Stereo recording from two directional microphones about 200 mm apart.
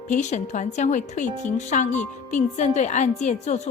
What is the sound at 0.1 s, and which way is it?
Speech, 35° left (ahead or behind).